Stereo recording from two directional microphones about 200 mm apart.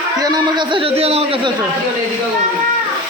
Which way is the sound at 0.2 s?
20° right (ahead or behind).